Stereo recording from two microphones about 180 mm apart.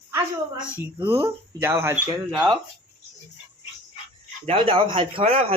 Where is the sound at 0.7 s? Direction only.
10° right (ahead or behind).